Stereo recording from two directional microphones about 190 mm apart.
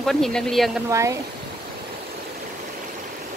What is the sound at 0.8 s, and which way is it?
Speech, 15° right (ahead or behind).